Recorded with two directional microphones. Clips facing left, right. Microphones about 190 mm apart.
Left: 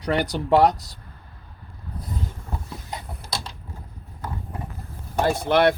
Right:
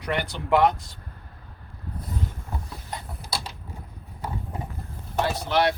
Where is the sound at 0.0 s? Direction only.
40° left (ahead or behind).